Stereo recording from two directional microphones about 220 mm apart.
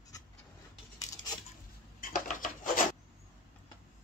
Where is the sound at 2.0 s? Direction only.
35° left (ahead or behind).